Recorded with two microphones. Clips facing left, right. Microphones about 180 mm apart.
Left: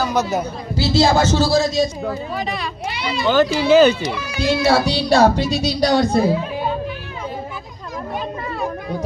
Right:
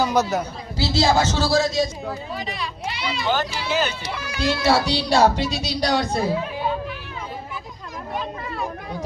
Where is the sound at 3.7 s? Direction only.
90° left.